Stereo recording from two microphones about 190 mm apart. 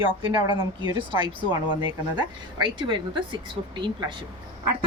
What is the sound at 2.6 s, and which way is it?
Speech, 25° right (ahead or behind).